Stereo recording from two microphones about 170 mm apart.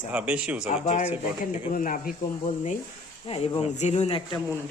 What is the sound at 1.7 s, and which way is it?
Speech, 55° left (ahead or behind).